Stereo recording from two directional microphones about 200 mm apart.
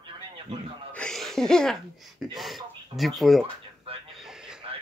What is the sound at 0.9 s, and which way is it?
Speech, 5° left (ahead or behind).